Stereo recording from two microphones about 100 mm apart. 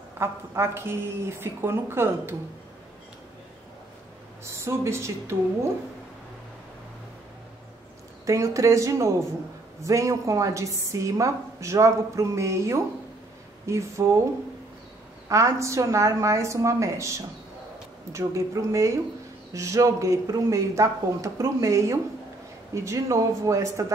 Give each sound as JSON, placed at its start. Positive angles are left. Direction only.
{"t": 0.2, "sound": "a woman's voice", "side_deg": -25}
{"t": 4.5, "sound": "a woman's voice", "side_deg": -30}
{"t": 8.3, "sound": "a woman's voice", "side_deg": -30}
{"t": 15.2, "sound": "a woman's voice", "side_deg": -35}